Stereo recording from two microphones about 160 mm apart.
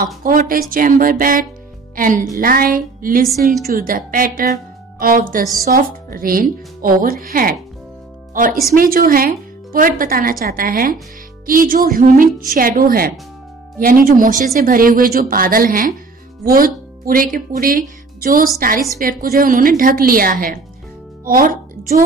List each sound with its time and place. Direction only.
0.2 s a woman's voice: 60° right (ahead or behind)
8.7 s a woman's voice: 65° right (ahead or behind)